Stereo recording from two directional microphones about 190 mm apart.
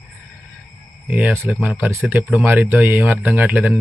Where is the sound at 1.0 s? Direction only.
10° right (ahead or behind).